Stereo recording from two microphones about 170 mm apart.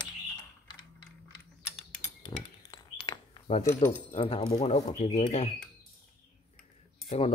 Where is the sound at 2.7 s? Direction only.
25° left (ahead or behind).